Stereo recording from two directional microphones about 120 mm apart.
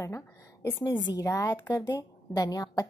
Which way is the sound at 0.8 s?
35° left (ahead or behind).